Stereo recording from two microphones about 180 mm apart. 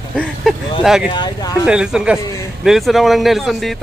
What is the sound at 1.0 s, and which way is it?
Speech, 25° left (ahead or behind).